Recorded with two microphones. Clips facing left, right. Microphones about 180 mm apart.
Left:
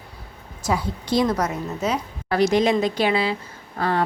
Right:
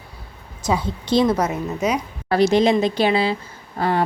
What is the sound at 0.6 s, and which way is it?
A woman's voice, 25° right (ahead or behind).